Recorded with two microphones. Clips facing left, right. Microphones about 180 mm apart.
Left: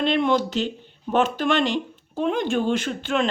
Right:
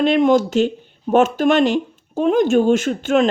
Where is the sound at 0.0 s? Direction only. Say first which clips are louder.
Right 6 dB; 45° right (ahead or behind).